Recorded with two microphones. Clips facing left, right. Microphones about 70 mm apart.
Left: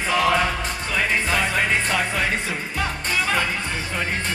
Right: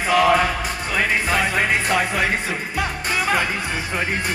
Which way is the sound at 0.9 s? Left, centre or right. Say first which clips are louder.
Right 2 dB; centre.